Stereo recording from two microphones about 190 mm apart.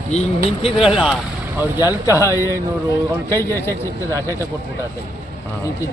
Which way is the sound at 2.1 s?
15° right (ahead or behind).